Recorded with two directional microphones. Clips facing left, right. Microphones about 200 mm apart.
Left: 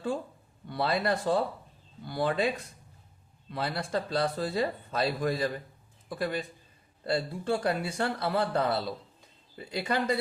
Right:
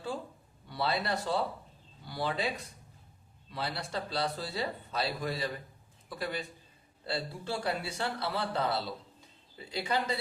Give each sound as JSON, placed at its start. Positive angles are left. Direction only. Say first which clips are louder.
{"t": 0.7, "sound": "speech", "louder": "left 4 dB", "side_deg": 50}
{"t": 3.5, "sound": "speech", "louder": "left 5 dB", "side_deg": 50}